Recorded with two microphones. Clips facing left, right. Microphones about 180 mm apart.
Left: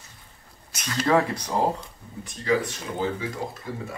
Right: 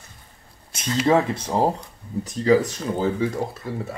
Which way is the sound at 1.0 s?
25° right (ahead or behind).